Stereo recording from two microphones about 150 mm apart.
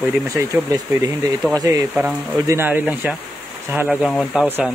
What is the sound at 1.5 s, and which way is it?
Speech, 25° right (ahead or behind).